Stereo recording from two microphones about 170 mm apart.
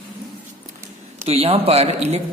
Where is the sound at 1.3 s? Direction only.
35° right (ahead or behind).